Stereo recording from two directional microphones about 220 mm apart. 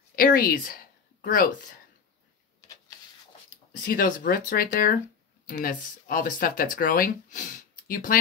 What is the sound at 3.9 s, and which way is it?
Speech, 40° left (ahead or behind).